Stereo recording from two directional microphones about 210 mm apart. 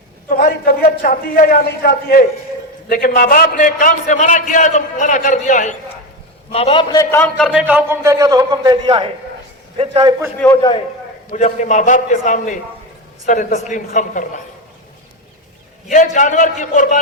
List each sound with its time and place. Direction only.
0.3 s a sound: 40° left (ahead or behind)
1.0 s a man's voice: 45° left (ahead or behind)
6.9 s a man's voice: 15° left (ahead or behind); by 10.2 s 20° right (ahead or behind)
11.3 s a man's voice: 35° left (ahead or behind)
15.9 s a man's voice: 35° left (ahead or behind)